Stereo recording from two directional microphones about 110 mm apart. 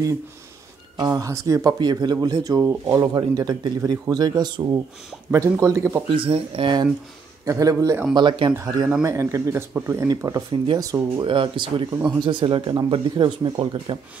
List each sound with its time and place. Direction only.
0.9 s speech: 35° right (ahead or behind)
2.6 s speech: 25° right (ahead or behind)
3.2 s speech: 40° right (ahead or behind)
5.3 s speech: 25° right (ahead or behind)
6.0 s speech: 55° right (ahead or behind)
7.4 s speech: 30° right (ahead or behind)
8.1 s speech: 45° right (ahead or behind)
8.5 s speech: 30° right (ahead or behind)
11.2 s speech: 50° right (ahead or behind)